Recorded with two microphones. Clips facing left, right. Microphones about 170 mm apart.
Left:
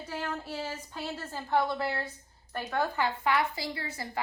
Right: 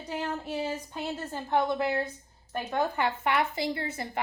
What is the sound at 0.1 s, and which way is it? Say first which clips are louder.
A woman's voice: right 4 dB; 20° right (ahead or behind).